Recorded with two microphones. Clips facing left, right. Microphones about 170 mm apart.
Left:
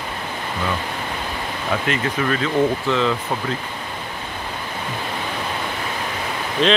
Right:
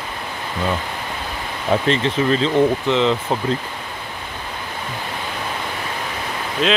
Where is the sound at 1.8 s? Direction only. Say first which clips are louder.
Right 2 dB; 25° right (ahead or behind).